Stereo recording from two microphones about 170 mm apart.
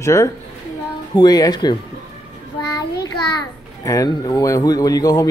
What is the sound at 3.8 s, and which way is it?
Speech, 20° left (ahead or behind).